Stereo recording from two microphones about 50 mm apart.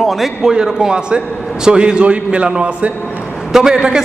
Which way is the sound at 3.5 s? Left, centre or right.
Centre.